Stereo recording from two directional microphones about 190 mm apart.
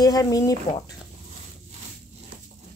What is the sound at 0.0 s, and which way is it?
Speech, 20° left (ahead or behind).